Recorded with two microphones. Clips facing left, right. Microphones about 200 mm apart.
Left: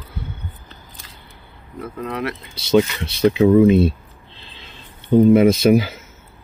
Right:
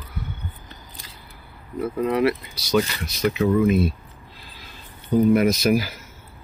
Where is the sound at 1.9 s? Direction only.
10° right (ahead or behind).